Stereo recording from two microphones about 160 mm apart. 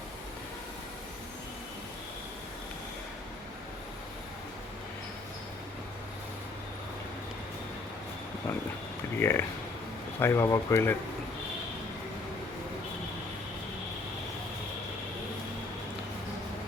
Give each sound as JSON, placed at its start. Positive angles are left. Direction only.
{"t": 9.1, "sound": "speech", "side_deg": 15}